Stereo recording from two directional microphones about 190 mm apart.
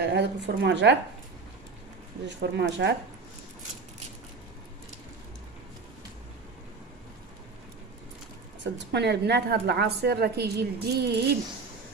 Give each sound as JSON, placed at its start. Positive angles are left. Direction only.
{"t": 0.0, "sound": "a woman's voice", "side_deg": -60}
{"t": 2.2, "sound": "a woman's voice", "side_deg": -65}
{"t": 8.7, "sound": "a woman's voice", "side_deg": -65}